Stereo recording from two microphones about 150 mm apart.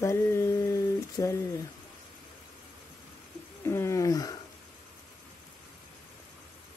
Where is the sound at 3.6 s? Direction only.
20° left (ahead or behind).